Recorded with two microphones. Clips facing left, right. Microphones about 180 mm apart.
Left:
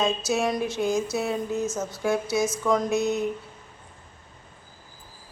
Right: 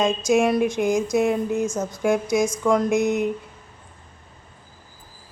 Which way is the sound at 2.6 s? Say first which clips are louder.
Right 4 dB; 15° right (ahead or behind).